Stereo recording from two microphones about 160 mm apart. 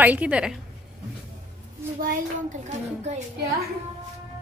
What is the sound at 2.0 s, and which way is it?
Speech, 55° right (ahead or behind).